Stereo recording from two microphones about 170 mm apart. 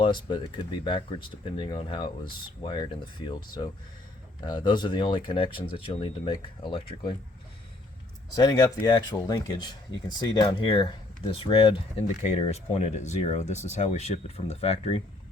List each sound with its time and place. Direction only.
0.0 s speech: 30° left (ahead or behind)
4.4 s speech: 25° left (ahead or behind)
8.4 s speech: 20° left (ahead or behind); by 15.0 s 40° left (ahead or behind)